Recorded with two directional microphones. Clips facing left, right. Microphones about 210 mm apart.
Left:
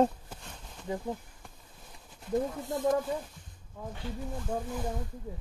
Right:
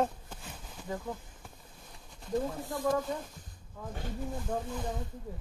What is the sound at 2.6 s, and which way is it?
Speech, 20° left (ahead or behind).